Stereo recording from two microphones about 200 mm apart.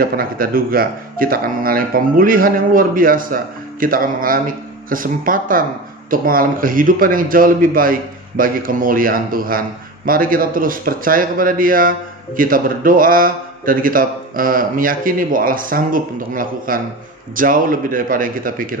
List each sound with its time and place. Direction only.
0.0 s a man's voice: 45° right (ahead or behind)